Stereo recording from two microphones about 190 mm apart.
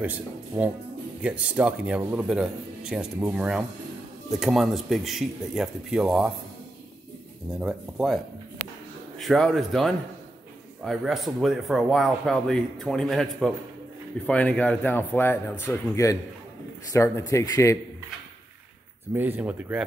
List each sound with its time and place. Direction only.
0.0 s speech: 10° right (ahead or behind)
7.5 s speech: centre (ahead or behind)
9.2 s a man's voice: centre (ahead or behind)
19.1 s speech: 10° right (ahead or behind)